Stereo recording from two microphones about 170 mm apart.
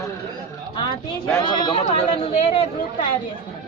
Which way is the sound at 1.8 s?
35° left (ahead or behind).